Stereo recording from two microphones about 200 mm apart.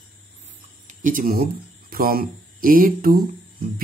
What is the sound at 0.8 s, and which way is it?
Speech, 40° right (ahead or behind).